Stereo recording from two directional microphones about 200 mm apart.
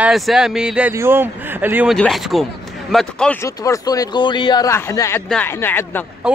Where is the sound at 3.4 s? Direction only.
15° left (ahead or behind).